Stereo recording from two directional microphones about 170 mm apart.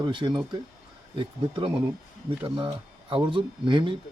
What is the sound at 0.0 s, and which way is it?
Speech, 25° right (ahead or behind).